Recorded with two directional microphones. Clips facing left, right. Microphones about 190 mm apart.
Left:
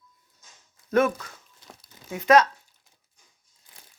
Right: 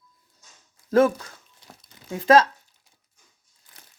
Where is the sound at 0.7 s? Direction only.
30° right (ahead or behind).